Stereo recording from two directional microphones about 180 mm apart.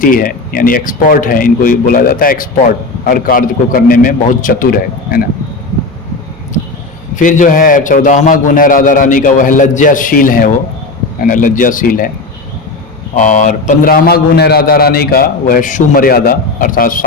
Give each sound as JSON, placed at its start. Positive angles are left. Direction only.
{"t": 0.0, "sound": "a man's voice", "side_deg": 50}
{"t": 7.2, "sound": "a man's voice", "side_deg": 45}
{"t": 13.1, "sound": "a man's voice", "side_deg": 45}